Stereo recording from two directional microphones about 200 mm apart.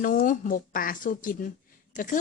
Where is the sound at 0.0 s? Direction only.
45° left (ahead or behind).